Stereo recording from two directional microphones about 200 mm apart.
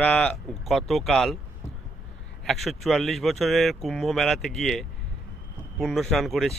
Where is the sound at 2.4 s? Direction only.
Centre (ahead or behind).